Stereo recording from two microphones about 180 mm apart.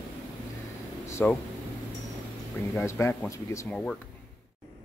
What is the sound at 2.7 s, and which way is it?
Speech, 15° left (ahead or behind).